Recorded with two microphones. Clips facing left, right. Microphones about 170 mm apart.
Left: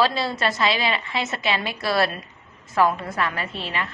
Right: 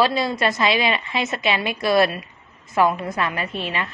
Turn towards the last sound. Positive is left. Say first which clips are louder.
# right 3 dB
turn(degrees=-20)  # may be behind; listen again after turning